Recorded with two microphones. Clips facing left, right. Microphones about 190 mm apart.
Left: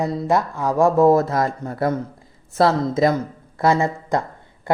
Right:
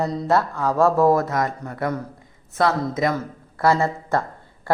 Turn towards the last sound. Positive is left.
turn(degrees=20)  # may be behind; listen again after turning